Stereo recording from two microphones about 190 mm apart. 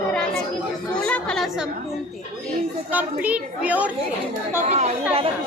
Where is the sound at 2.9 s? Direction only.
5° right (ahead or behind).